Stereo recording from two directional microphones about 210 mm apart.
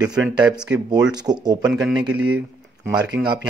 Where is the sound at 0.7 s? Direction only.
20° right (ahead or behind).